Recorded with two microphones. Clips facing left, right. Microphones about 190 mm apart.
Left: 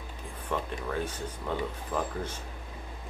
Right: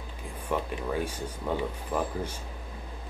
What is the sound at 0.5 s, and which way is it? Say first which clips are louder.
Speech: right 3 dB; 10° right (ahead or behind).